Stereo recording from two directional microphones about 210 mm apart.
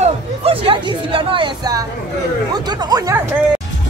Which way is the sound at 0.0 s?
30° right (ahead or behind).